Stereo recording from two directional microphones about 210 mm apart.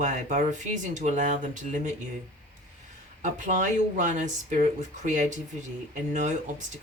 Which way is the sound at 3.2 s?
35° right (ahead or behind).